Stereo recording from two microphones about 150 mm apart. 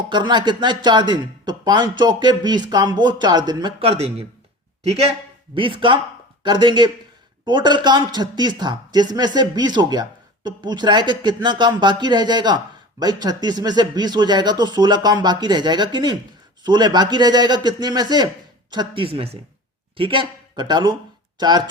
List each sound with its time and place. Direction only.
0.1 s speech: 30° right (ahead or behind)
3.8 s speech: 45° right (ahead or behind)
5.5 s speech: 35° right (ahead or behind)